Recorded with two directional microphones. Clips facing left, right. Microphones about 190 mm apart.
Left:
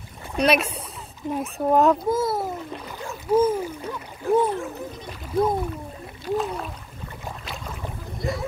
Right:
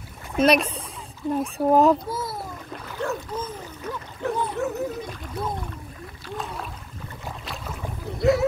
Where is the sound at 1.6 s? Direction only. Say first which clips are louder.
Right 1 dB; 5° right (ahead or behind).